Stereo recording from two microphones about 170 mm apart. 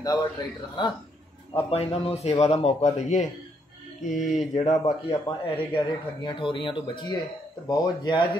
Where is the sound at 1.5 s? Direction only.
35° left (ahead or behind).